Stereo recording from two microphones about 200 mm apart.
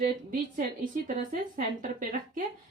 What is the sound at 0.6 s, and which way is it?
Speech, 40° right (ahead or behind).